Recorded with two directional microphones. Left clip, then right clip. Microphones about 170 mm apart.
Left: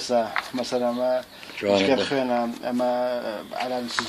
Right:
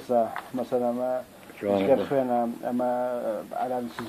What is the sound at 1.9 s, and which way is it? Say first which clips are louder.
Speech: left 1 dB; 25° right (ahead or behind).